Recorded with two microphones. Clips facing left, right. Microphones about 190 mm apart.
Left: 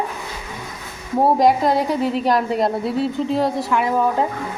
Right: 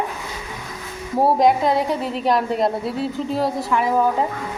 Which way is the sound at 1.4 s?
Centre (ahead or behind).